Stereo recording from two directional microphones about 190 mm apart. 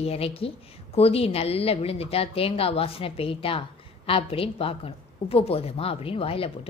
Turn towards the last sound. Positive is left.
turn(degrees=30)  # may be behind; listen again after turning